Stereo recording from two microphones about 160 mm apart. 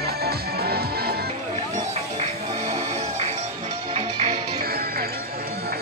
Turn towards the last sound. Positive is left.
turn(degrees=-70)  # may be behind; listen again after turning